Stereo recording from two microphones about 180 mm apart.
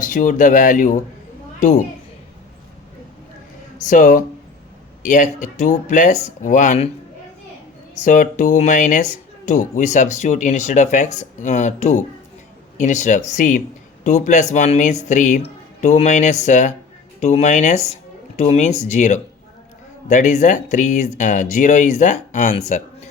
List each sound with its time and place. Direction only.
0.0 s speech: 45° left (ahead or behind)
3.8 s speech: 45° left (ahead or behind)
8.0 s speech: 45° left (ahead or behind)